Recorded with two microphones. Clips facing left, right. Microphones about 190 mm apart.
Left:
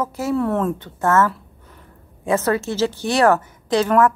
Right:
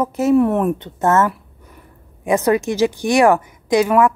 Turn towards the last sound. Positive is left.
turn(degrees=-10)  # may be behind; listen again after turning